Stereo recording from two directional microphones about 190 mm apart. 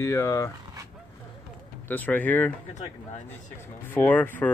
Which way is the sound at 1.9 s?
10° left (ahead or behind).